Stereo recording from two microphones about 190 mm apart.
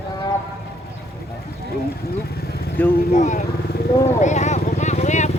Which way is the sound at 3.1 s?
40° left (ahead or behind).